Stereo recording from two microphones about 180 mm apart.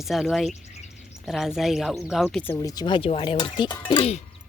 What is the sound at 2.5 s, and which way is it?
Speech, 20° left (ahead or behind).